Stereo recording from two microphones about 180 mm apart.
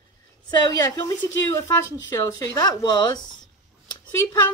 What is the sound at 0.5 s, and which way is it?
Speech, 20° left (ahead or behind).